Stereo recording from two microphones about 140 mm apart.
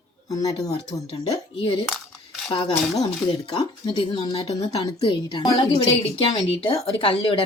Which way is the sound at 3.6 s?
40° left (ahead or behind).